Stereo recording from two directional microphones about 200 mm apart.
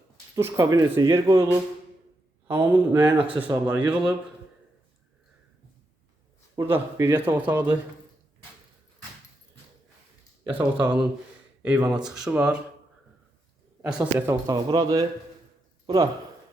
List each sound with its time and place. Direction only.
0.3 s speech: 15° right (ahead or behind)
2.5 s speech: 10° right (ahead or behind)
6.6 s speech: 10° right (ahead or behind)
10.5 s speech: 5° right (ahead or behind)
13.8 s speech: 10° right (ahead or behind)